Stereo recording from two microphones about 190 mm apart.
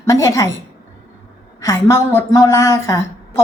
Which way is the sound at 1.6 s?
15° left (ahead or behind).